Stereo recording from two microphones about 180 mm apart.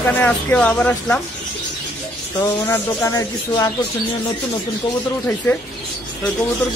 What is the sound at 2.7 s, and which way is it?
Speech, 15° left (ahead or behind).